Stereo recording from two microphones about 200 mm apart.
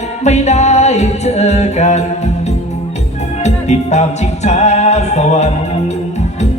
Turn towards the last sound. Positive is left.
turn(degrees=35)  # may be behind; listen again after turning